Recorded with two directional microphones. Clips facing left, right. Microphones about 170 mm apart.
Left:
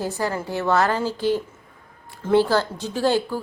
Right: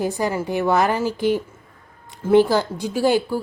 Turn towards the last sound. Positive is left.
turn(degrees=-10)  # may be behind; listen again after turning